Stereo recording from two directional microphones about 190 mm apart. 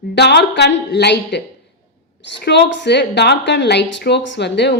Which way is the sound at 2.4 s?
65° left (ahead or behind).